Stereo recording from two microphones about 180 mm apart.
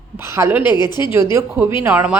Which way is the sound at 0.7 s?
25° left (ahead or behind).